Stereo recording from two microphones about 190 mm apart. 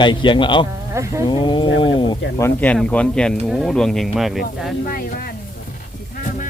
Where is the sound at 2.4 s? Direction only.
10° left (ahead or behind).